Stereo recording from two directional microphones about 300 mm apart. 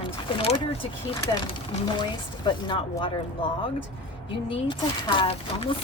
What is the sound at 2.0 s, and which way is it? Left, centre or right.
Speech, centre.